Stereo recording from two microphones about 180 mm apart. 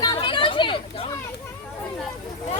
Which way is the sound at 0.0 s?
25° left (ahead or behind).